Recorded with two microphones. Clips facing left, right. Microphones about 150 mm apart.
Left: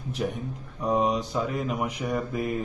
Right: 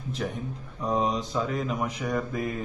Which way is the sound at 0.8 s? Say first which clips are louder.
Left 2 dB; 10° left (ahead or behind).